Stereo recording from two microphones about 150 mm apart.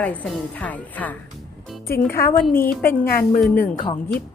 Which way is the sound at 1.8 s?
85° left.